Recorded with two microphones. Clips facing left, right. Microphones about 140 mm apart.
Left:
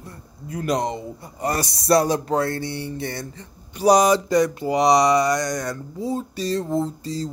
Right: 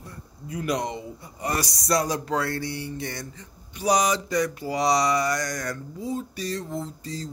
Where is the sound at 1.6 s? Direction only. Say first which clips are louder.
Left 8 dB; 25° left (ahead or behind).